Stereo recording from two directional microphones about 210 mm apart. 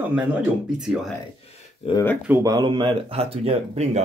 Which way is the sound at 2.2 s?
15° right (ahead or behind).